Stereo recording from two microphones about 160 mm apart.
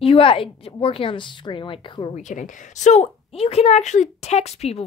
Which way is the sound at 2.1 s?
50° left (ahead or behind).